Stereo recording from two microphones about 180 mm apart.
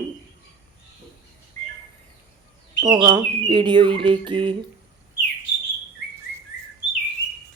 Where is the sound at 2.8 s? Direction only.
25° right (ahead or behind).